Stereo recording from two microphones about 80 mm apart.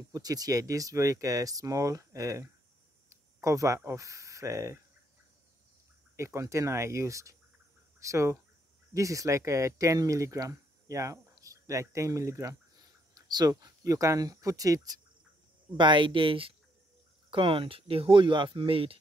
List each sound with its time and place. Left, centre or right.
0.1 s speech: right
6.1 s speech: right
12.7 s speech: right
15.8 s speech: right